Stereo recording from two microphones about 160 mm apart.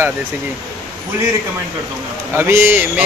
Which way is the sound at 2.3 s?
15° right (ahead or behind).